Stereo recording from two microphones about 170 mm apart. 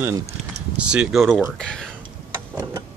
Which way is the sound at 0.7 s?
5° right (ahead or behind).